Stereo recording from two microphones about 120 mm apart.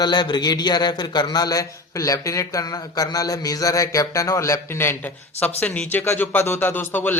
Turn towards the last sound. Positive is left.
turn(degrees=15)  # may be behind; listen again after turning